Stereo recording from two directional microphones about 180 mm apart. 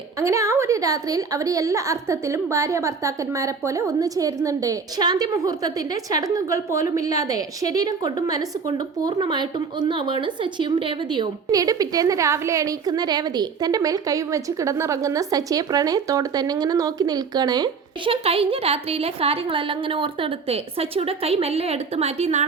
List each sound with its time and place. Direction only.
0.2 s a woman's voice: 15° right (ahead or behind); by 22.4 s 35° right (ahead or behind)